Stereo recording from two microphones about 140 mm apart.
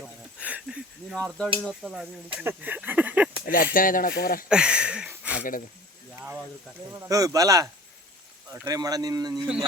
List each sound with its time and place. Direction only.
0.0 s speech: 10° right (ahead or behind)
3.4 s speech: 90° left
4.4 s speech: 5° right (ahead or behind)
7.1 s speech: 25° right (ahead or behind)